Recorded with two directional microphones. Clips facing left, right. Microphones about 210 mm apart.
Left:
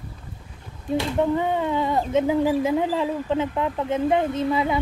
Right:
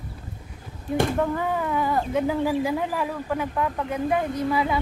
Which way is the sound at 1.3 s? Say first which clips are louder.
Left 3 dB; 25° left (ahead or behind).